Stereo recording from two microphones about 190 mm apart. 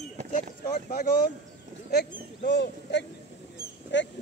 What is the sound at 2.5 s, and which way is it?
Speech, 65° left (ahead or behind).